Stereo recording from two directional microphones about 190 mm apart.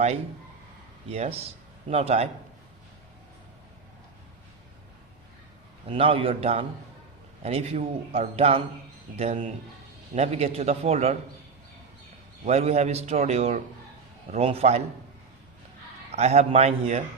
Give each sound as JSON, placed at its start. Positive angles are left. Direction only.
{"t": 1.9, "sound": "speech", "side_deg": -30}
{"t": 5.9, "sound": "a man's voice", "side_deg": -30}
{"t": 12.5, "sound": "speech", "side_deg": -35}
{"t": 16.1, "sound": "speech", "side_deg": -35}